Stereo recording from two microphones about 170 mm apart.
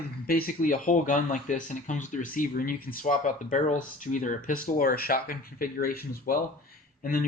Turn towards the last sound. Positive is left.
turn(degrees=55)  # may be behind; listen again after turning